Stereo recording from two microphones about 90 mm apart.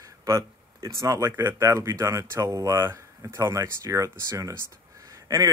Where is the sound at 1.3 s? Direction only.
25° right (ahead or behind).